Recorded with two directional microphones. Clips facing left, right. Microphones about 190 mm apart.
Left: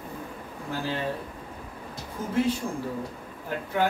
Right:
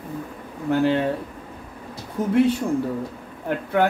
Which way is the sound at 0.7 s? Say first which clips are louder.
Right 12 dB; 65° right (ahead or behind).